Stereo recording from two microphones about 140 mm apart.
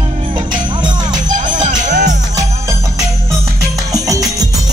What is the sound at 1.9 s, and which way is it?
Jingle bell, 60° right (ahead or behind).